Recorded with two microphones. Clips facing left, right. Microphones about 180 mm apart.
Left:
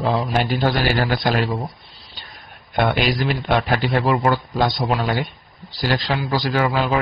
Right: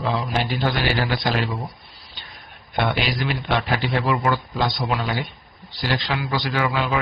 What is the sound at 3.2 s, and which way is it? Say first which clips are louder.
Speech: left 3 dB; 45° left (ahead or behind).